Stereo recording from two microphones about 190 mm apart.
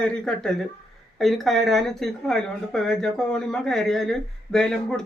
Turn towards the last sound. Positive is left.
turn(degrees=0)  # may be behind; listen again after turning